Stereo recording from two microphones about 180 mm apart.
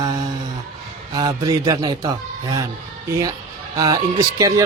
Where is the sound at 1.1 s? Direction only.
20° right (ahead or behind).